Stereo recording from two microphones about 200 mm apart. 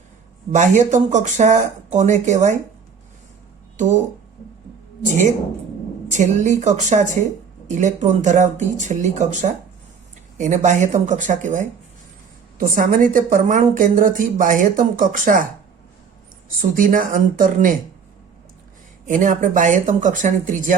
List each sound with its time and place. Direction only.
0.5 s a woman's voice: 35° right (ahead or behind)
3.8 s speech: 35° right (ahead or behind)
6.1 s a woman's voice: 35° right (ahead or behind)
16.6 s a woman's voice: 40° right (ahead or behind)
19.0 s a woman's voice: 40° right (ahead or behind)